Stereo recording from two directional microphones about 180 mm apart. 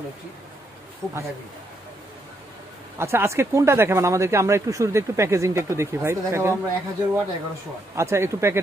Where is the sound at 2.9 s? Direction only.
15° right (ahead or behind).